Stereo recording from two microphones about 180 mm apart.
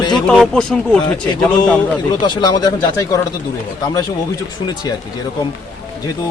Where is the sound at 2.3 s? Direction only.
25° left (ahead or behind).